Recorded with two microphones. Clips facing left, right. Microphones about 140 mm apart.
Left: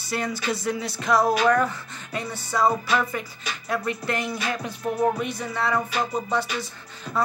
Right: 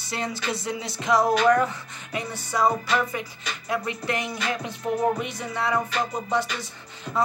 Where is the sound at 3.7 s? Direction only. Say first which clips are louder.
Left 1 dB; 20° right (ahead or behind).